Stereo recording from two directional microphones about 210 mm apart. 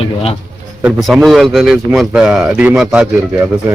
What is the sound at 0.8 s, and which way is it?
A man's voice, 5° right (ahead or behind).